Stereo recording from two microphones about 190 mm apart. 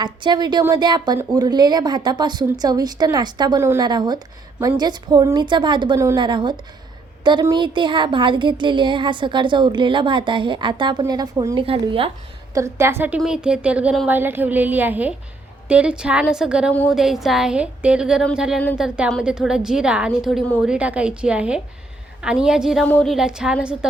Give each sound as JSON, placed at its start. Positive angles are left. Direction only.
{"t": 0.0, "sound": "a woman's voice", "side_deg": -25}
{"t": 12.5, "sound": "a woman's voice", "side_deg": -15}
{"t": 16.7, "sound": "a woman's voice", "side_deg": 10}